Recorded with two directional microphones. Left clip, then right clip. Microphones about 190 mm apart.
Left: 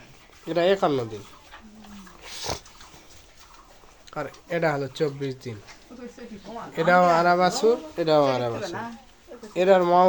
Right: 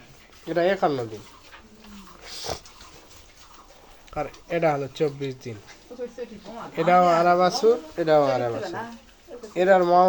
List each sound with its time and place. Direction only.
0.4 s speech: 15° left (ahead or behind)
2.2 s dog: 20° left (ahead or behind)
4.1 s speech: 5° left (ahead or behind)
6.7 s speech: 10° left (ahead or behind)